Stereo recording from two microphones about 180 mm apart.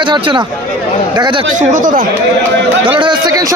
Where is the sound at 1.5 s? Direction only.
45° right (ahead or behind).